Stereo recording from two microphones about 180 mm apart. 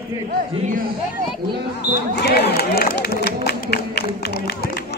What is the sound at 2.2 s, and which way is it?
Music, 65° left (ahead or behind).